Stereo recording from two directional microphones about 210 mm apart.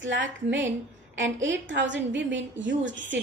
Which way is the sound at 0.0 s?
60° right (ahead or behind).